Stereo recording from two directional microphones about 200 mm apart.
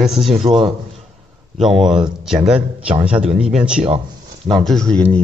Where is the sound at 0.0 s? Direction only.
Centre (ahead or behind).